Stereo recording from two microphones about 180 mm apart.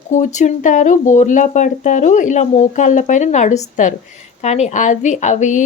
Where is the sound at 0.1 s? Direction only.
40° left (ahead or behind).